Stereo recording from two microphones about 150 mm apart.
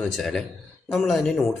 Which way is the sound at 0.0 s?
5° left (ahead or behind).